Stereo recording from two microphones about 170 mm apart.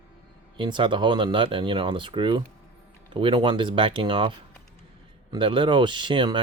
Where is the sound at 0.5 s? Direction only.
30° right (ahead or behind).